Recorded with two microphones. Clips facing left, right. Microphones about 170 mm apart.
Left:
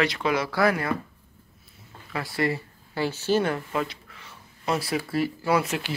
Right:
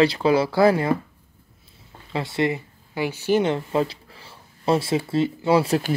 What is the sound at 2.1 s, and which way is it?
Speech, 25° right (ahead or behind).